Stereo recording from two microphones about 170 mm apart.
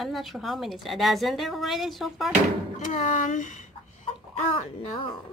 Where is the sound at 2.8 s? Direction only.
45° left (ahead or behind).